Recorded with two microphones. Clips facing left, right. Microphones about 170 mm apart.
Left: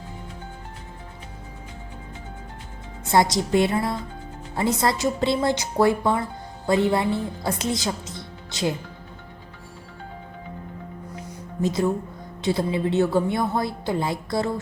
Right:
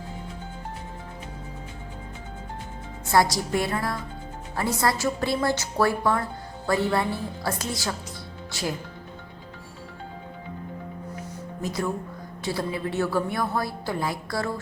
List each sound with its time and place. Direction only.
3.1 s a woman's voice: 20° left (ahead or behind)
11.6 s a woman's voice: 20° left (ahead or behind)